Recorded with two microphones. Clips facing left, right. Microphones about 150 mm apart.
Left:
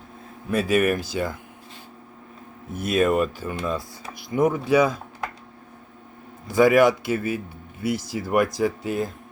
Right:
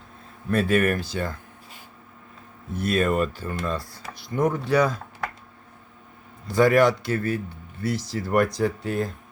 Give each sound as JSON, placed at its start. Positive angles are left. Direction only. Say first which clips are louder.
{"t": 0.5, "sound": "speech", "louder": "left 1 dB", "side_deg": 5}
{"t": 2.8, "sound": "speech", "louder": "left 2 dB", "side_deg": 10}
{"t": 3.8, "sound": "speech", "louder": "left 1 dB", "side_deg": 15}
{"t": 6.5, "sound": "speech", "louder": "left 2 dB", "side_deg": 10}